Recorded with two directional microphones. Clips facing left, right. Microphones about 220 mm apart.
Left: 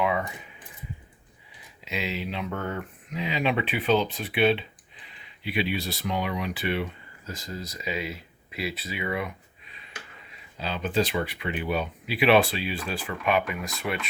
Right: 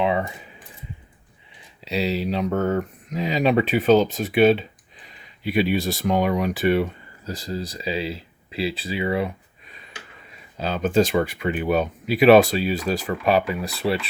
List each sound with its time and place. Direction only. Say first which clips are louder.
0.0 s keys jangling: right 4 dB; 30° right (ahead or behind)
1.8 s speech: right 8 dB; 35° right (ahead or behind)
9.6 s a sound: right 5 dB; 45° right (ahead or behind)
10.6 s speech: right 7 dB; 45° right (ahead or behind)